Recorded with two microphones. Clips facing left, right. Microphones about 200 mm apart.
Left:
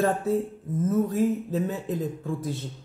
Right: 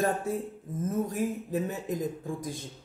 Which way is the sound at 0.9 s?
15° right (ahead or behind).